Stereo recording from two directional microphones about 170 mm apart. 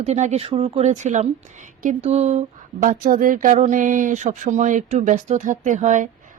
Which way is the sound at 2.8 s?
50° right (ahead or behind).